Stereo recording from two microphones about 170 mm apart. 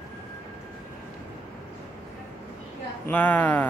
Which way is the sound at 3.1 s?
10° left (ahead or behind).